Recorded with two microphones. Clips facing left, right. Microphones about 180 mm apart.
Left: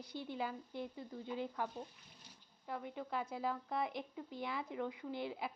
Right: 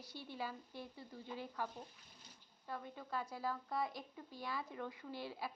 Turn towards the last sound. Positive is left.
turn(degrees=20)  # may be behind; listen again after turning